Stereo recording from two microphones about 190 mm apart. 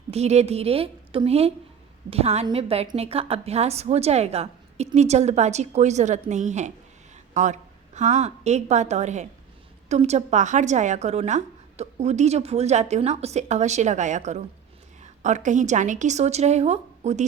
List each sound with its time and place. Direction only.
0.1 s a woman's voice: 35° right (ahead or behind)